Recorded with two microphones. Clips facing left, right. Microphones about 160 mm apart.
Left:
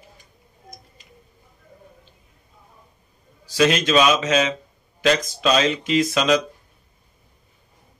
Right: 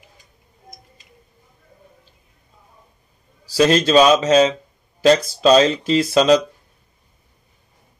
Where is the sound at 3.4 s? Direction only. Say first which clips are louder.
Right 4 dB; 35° right (ahead or behind).